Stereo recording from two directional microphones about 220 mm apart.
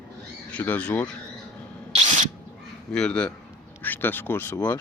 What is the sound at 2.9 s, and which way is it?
A man's voice, 5° left (ahead or behind).